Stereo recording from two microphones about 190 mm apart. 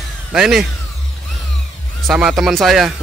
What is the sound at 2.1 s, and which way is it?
Speech, centre (ahead or behind).